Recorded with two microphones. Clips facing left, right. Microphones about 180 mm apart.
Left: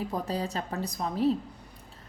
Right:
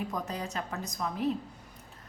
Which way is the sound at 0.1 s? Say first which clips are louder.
Left 4 dB; 30° left (ahead or behind).